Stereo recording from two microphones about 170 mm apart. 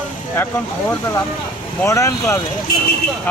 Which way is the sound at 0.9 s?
20° left (ahead or behind).